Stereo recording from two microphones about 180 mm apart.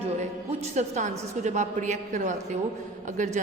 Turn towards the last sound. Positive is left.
turn(degrees=-45)  # may be behind; listen again after turning